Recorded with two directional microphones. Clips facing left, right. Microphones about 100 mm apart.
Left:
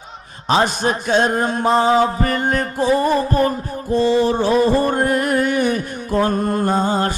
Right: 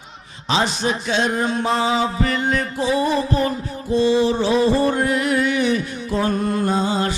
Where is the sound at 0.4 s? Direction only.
50° left (ahead or behind).